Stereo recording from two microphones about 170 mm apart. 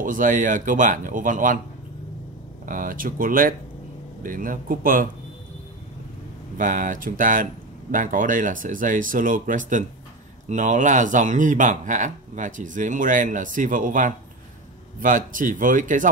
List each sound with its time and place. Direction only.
0.0 s speech: 50° right (ahead or behind)
2.6 s speech: 55° right (ahead or behind)
6.6 s speech: 50° right (ahead or behind)